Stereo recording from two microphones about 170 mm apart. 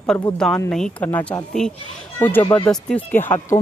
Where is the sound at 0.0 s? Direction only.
5° left (ahead or behind).